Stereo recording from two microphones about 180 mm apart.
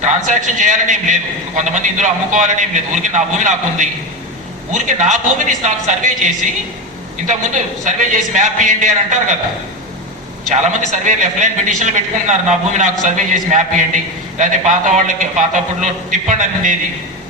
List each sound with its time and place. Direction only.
0.0 s a man's voice: 45° right (ahead or behind)
10.5 s a man's voice: 45° right (ahead or behind)